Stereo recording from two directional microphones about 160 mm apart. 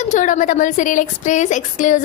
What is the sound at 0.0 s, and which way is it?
Speech, 50° left (ahead or behind).